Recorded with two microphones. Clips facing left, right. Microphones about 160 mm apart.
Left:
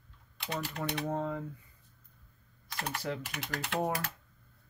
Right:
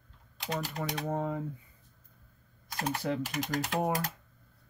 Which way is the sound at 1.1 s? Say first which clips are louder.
Right 1 dB; 10° right (ahead or behind).